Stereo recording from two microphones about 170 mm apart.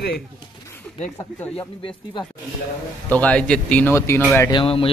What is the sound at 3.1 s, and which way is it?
A man's voice, 10° left (ahead or behind).